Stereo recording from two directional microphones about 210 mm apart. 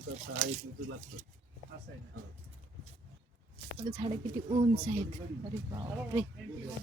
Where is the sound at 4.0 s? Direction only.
25° right (ahead or behind).